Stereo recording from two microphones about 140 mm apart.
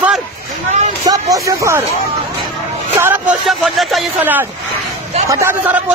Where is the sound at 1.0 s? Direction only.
25° right (ahead or behind).